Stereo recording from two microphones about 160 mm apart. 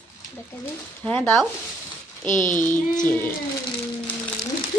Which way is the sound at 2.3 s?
50° left (ahead or behind).